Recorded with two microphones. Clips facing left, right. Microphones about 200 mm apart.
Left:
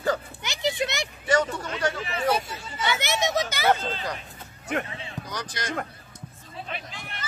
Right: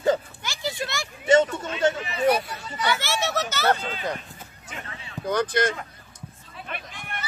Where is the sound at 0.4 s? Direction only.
20° left (ahead or behind).